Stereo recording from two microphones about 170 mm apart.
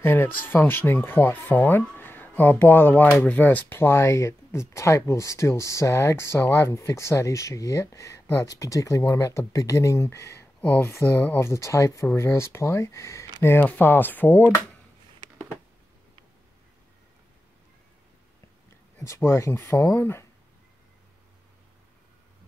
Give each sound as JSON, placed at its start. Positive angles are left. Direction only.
{"t": 0.0, "sound": "speech", "side_deg": 10}
{"t": 18.9, "sound": "speech", "side_deg": 15}